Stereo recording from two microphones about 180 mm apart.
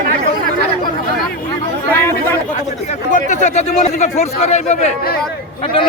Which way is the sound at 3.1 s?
40° left (ahead or behind).